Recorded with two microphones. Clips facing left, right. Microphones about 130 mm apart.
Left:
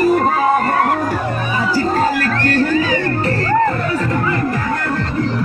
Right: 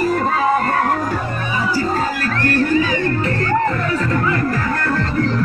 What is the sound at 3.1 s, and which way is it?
Music, 35° left (ahead or behind).